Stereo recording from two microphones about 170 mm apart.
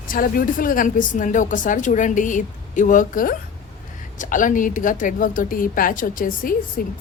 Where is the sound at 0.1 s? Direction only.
55° left (ahead or behind).